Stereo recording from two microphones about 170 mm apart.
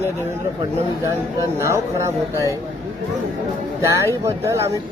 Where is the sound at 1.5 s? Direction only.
15° right (ahead or behind).